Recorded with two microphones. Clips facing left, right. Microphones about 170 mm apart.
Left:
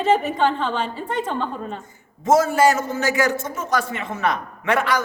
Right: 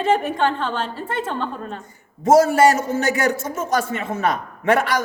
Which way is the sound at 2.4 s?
50° right (ahead or behind).